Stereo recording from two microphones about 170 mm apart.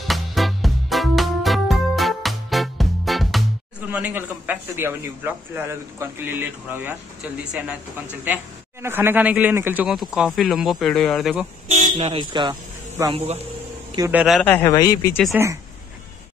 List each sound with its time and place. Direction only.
0.1 s music: centre (ahead or behind)
3.9 s a man's voice: 10° right (ahead or behind)
11.7 s speech: 40° right (ahead or behind); by 13.1 s 20° right (ahead or behind)
14.1 s speech: centre (ahead or behind)
14.4 s speech: 15° left (ahead or behind)
15.3 s a man's voice: 15° right (ahead or behind)